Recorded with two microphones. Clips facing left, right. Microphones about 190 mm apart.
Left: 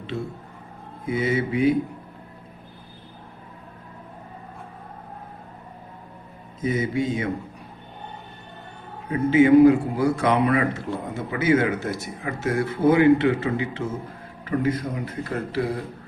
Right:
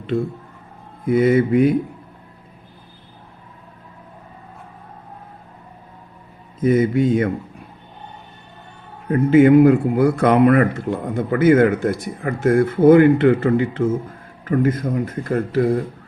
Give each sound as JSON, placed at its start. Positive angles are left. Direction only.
{"t": 1.0, "sound": "mantra", "side_deg": -55}
{"t": 6.6, "sound": "mantra", "side_deg": -55}
{"t": 9.0, "sound": "a man's voice", "side_deg": -55}